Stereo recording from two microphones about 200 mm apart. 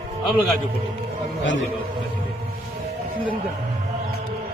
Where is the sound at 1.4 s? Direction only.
70° left (ahead or behind).